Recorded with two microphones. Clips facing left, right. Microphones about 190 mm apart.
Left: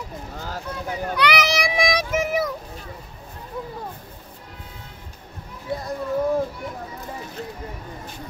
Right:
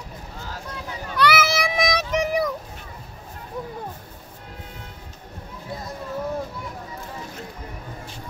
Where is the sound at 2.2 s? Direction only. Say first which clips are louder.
Right 1 dB; centre (ahead or behind).